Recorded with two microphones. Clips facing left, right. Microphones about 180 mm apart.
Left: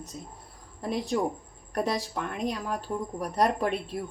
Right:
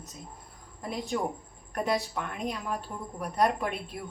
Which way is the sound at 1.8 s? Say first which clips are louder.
Even; 35° left (ahead or behind).